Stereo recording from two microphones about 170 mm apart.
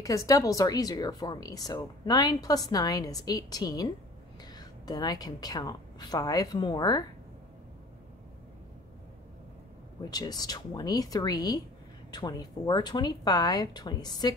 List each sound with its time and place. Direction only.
0.0 s a woman's voice: 20° left (ahead or behind)
10.0 s speech: 25° left (ahead or behind)